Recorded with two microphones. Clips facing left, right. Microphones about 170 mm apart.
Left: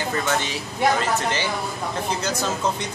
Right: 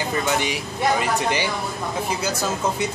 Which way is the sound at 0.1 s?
15° right (ahead or behind).